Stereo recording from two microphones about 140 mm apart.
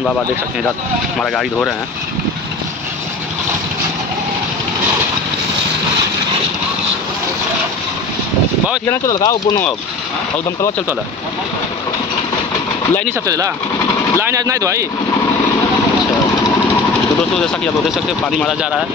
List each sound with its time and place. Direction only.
1.2 s speech: 5° left (ahead or behind)
8.8 s speech: 25° left (ahead or behind)
14.2 s speech: 25° right (ahead or behind)